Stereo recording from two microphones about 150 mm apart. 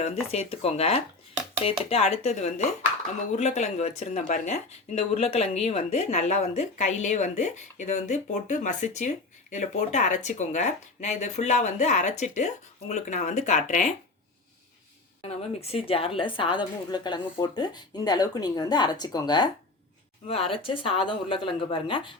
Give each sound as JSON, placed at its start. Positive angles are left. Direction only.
{"t": 0.0, "sound": "a woman's voice", "side_deg": 45}
{"t": 15.2, "sound": "a woman's voice", "side_deg": 45}
{"t": 20.2, "sound": "speech", "side_deg": 40}